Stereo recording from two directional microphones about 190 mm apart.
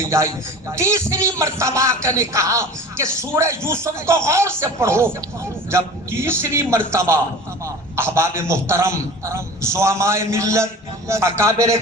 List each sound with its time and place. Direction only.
0.8 s speech: 15° right (ahead or behind)